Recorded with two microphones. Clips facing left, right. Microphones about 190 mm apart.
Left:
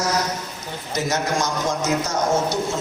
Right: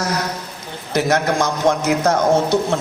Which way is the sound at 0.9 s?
60° right (ahead or behind).